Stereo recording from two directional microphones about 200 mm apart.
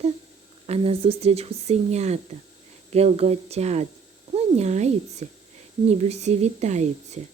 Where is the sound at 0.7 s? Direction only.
30° right (ahead or behind).